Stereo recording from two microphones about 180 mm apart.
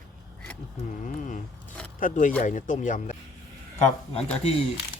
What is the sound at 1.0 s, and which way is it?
Speech, 45° left (ahead or behind).